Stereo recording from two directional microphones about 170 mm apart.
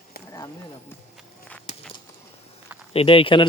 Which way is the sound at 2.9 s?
35° left (ahead or behind).